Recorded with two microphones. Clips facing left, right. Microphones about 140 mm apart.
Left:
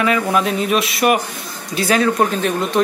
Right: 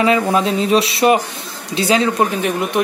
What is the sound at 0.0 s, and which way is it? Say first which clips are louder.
Speech: right 2 dB; 25° right (ahead or behind).